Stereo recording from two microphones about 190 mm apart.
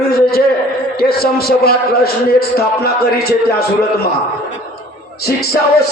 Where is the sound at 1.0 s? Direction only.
55° left (ahead or behind).